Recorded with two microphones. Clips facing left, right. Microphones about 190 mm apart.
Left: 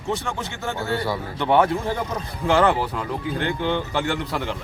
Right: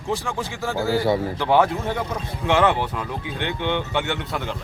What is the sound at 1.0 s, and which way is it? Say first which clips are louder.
Speech: right 6 dB; 25° right (ahead or behind).